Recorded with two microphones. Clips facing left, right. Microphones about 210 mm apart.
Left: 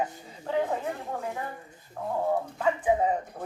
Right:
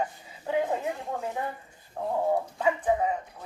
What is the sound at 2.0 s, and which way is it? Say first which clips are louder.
Speech: right 2 dB; 25° right (ahead or behind).